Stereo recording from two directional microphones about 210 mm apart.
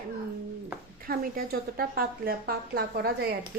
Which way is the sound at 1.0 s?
45° right (ahead or behind).